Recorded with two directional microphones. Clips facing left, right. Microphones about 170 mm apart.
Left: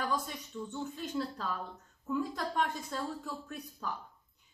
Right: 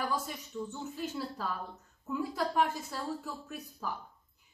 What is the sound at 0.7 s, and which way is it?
A woman's voice, 5° right (ahead or behind).